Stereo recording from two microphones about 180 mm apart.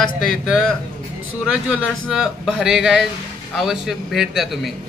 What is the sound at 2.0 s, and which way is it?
Speech, centre (ahead or behind).